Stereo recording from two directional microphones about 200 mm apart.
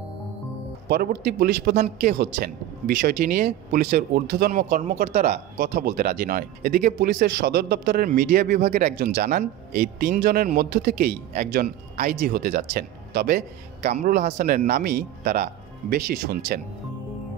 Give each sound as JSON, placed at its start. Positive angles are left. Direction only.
{"t": 0.8, "sound": "speech", "side_deg": -50}